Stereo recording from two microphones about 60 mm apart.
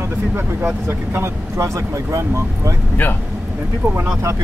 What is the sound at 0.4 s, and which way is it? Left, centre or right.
Speech, right.